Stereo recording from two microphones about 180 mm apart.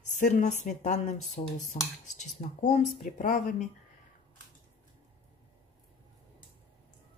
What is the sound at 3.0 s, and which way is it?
Speech, 50° left (ahead or behind).